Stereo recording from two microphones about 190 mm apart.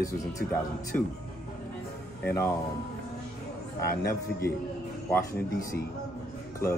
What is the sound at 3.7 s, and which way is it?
Speech, 15° left (ahead or behind).